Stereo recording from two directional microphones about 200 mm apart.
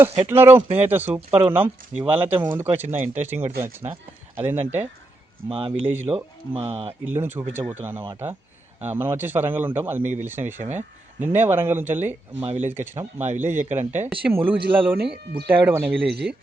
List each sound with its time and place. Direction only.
0.3 s speech: 10° right (ahead or behind)
5.5 s speech: 25° right (ahead or behind)
5.9 s speech: 10° right (ahead or behind)
6.1 s speech: 30° right (ahead or behind)
7.0 s speech: 10° right (ahead or behind)
12.4 s speech: 30° right (ahead or behind)
12.6 s speech: 10° right (ahead or behind)
14.6 s speech: 55° right (ahead or behind)
15.4 s speech: 10° right (ahead or behind)
16.0 s speech: 55° right (ahead or behind)